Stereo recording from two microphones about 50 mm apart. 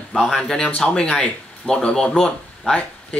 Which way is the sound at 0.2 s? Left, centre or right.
Centre.